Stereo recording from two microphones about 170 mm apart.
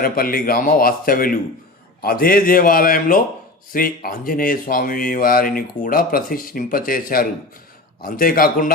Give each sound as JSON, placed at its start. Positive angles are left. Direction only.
{"t": 0.0, "sound": "speech", "side_deg": 60}